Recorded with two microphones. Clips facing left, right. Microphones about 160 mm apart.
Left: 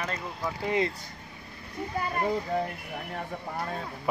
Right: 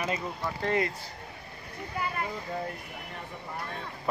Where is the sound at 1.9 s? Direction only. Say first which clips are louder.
Left 1 dB; 40° left (ahead or behind).